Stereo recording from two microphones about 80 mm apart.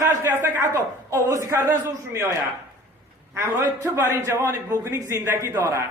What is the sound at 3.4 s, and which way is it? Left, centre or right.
Speech, right.